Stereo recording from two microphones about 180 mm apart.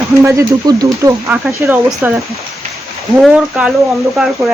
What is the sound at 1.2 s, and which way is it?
Speech, 5° right (ahead or behind).